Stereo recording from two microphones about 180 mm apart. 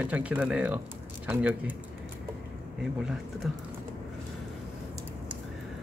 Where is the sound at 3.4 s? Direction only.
Centre (ahead or behind).